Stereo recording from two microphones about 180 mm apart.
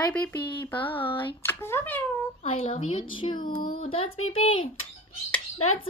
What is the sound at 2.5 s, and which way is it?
Speech, 30° left (ahead or behind).